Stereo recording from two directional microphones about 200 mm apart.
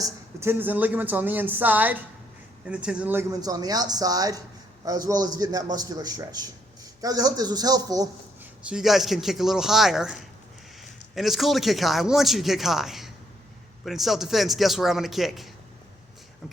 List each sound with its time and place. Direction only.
0.0 s a man's voice: 10° right (ahead or behind)
8.6 s speech: centre (ahead or behind)